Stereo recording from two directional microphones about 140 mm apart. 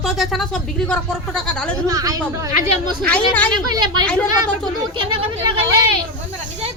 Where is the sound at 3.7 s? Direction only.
30° right (ahead or behind).